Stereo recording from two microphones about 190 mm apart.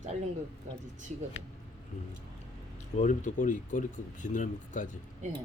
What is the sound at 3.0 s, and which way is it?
Speech, 40° left (ahead or behind).